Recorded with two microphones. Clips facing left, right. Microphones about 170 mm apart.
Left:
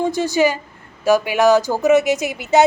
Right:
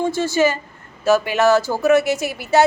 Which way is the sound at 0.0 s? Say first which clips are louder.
Left 1 dB; 15° left (ahead or behind).